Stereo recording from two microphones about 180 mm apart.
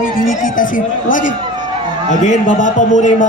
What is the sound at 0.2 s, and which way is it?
A man's voice, 45° left (ahead or behind).